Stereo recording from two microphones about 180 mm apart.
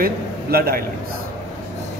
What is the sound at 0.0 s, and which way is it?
Speech, 60° right (ahead or behind).